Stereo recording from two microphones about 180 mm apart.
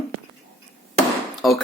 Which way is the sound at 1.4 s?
Centre (ahead or behind).